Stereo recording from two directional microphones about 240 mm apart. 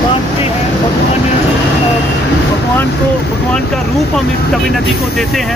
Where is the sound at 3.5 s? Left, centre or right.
Centre.